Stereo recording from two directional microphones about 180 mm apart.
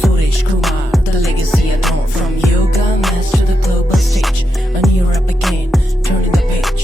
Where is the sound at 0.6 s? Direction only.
Centre (ahead or behind).